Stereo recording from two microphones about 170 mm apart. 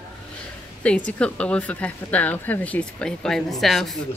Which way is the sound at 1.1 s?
5° left (ahead or behind).